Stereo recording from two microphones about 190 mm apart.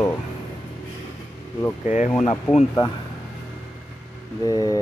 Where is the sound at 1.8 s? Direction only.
40° left (ahead or behind).